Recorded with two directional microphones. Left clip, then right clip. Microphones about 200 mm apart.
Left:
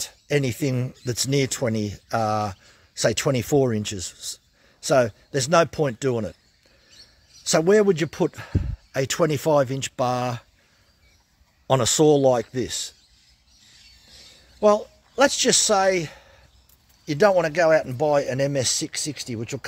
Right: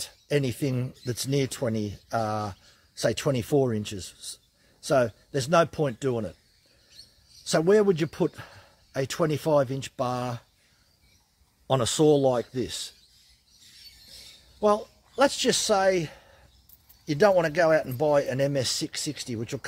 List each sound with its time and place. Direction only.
0.0 s speech: 35° left (ahead or behind)
7.4 s speech: 30° left (ahead or behind)
11.6 s speech: 35° left (ahead or behind)
14.6 s a man's voice: 35° left (ahead or behind)